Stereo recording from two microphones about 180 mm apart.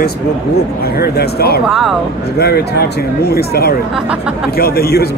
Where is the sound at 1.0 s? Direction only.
60° left (ahead or behind).